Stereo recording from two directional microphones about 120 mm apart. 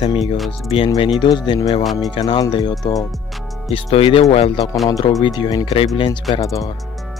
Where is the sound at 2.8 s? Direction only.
30° left (ahead or behind).